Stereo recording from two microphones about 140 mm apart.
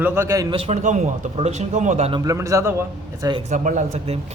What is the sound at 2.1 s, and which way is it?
A man's voice, 25° right (ahead or behind).